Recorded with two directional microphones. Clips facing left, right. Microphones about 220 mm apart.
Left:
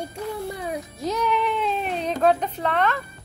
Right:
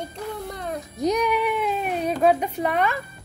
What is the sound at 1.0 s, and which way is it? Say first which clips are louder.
Speech: right 3 dB; 15° right (ahead or behind).